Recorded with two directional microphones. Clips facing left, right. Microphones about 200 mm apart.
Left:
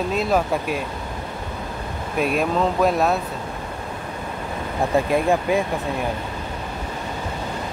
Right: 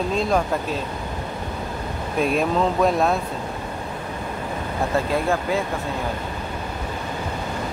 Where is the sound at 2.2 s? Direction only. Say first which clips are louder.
Even; centre (ahead or behind).